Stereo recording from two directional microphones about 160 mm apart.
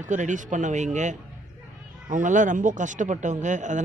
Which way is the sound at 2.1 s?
50° right (ahead or behind).